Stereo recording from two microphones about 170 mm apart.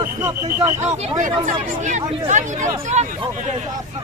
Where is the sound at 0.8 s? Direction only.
40° right (ahead or behind).